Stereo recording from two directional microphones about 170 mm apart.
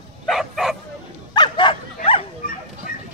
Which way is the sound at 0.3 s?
Centre (ahead or behind).